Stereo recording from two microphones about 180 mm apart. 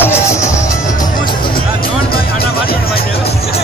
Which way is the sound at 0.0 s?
15° left (ahead or behind).